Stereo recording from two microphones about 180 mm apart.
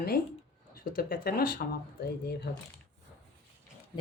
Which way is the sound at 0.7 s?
50° left (ahead or behind).